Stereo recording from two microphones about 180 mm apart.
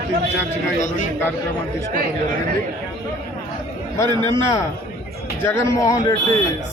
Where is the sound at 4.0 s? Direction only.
15° left (ahead or behind).